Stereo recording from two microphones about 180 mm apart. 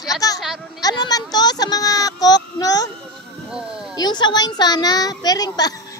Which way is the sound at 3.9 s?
25° left (ahead or behind).